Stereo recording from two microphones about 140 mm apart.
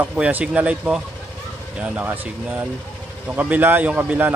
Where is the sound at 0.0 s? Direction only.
10° right (ahead or behind).